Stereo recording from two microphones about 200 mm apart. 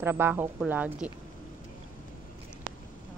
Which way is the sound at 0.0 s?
10° right (ahead or behind).